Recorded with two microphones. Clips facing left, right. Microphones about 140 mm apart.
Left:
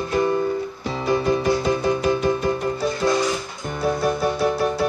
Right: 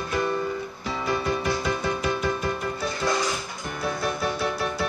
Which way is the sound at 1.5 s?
25° left (ahead or behind).